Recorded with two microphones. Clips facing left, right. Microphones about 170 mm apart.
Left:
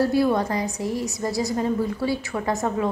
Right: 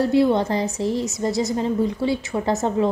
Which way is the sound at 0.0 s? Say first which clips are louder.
Right 2 dB; 25° right (ahead or behind).